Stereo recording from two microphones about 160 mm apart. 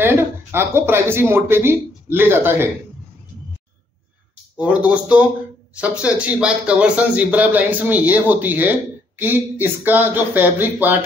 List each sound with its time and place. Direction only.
0.0 s speech: 15° right (ahead or behind)
4.6 s speech: 10° right (ahead or behind)